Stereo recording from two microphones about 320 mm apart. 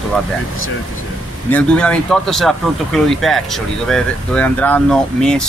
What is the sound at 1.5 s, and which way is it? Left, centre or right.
Speech, centre.